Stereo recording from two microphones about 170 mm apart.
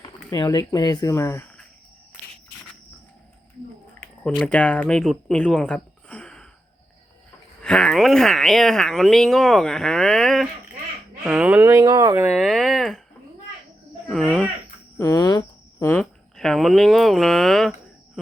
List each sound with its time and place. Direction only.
0.3 s speech: 20° left (ahead or behind)
4.0 s speech: 5° left (ahead or behind)
7.6 s speech: 5° left (ahead or behind)
11.7 s speech: 25° right (ahead or behind)
12.1 s speech: 10° right (ahead or behind)
14.3 s speech: 5° right (ahead or behind)
14.9 s speech: 20° left (ahead or behind)
16.0 s speech: 5° left (ahead or behind)